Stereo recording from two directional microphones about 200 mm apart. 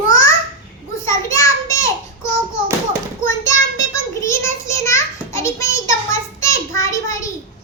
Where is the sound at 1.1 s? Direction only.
15° left (ahead or behind).